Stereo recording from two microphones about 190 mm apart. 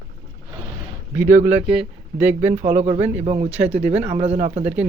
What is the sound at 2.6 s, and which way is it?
Speech, 40° right (ahead or behind).